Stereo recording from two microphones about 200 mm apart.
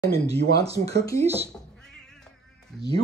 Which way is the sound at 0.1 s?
30° right (ahead or behind).